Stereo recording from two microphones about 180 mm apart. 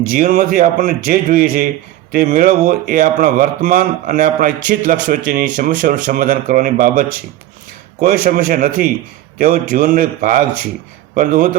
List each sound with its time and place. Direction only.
0.0 s a man's voice: 55° right (ahead or behind)
8.0 s a man's voice: 55° right (ahead or behind)